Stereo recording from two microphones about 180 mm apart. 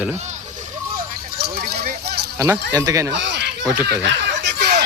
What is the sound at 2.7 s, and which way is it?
Speech, 20° right (ahead or behind).